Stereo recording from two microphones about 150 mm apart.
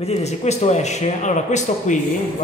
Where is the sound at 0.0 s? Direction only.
45° left (ahead or behind).